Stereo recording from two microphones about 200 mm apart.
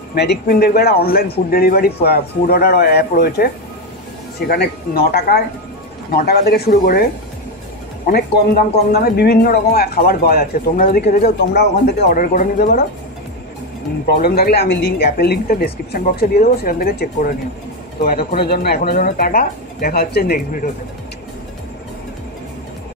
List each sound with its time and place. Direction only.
0.1 s speech: 55° left (ahead or behind)
4.5 s speech: 50° left (ahead or behind)
8.9 s speech: 50° left (ahead or behind)
14.0 s speech: 50° left (ahead or behind)